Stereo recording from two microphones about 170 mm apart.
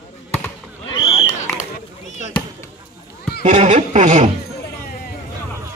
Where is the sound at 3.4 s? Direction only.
40° right (ahead or behind).